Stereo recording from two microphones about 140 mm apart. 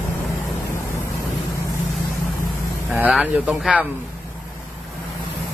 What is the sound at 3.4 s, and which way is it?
Speech, 10° right (ahead or behind).